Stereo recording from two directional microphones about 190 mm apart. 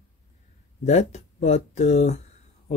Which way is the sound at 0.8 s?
35° left (ahead or behind).